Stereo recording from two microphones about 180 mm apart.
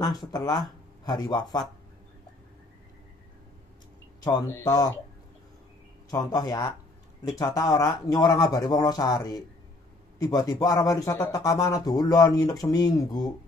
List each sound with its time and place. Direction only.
0.3 s speech: 25° left (ahead or behind)
4.2 s speech: 20° left (ahead or behind)
6.0 s speech: 20° left (ahead or behind)